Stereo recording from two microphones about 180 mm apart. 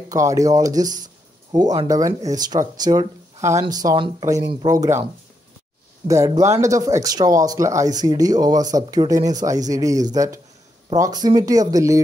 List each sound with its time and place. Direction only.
0.1 s speech: 20° right (ahead or behind)
6.0 s speech: 15° right (ahead or behind)